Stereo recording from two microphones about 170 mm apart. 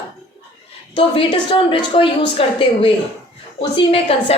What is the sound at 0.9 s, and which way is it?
A woman's voice, 30° left (ahead or behind).